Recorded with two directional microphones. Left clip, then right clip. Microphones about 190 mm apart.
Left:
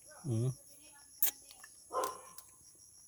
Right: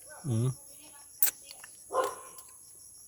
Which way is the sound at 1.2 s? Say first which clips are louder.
Right 6 dB; 15° right (ahead or behind).